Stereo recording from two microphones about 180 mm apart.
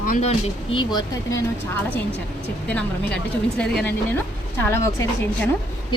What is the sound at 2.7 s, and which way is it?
A woman's voice, 5° left (ahead or behind).